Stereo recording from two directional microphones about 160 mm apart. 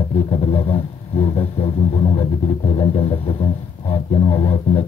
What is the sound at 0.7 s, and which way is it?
Vehicle, 40° left (ahead or behind).